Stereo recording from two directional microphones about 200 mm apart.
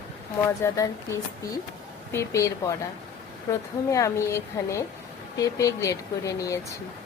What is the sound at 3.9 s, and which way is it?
Speech, 15° left (ahead or behind).